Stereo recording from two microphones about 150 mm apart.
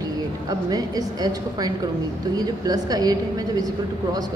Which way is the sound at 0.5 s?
25° right (ahead or behind).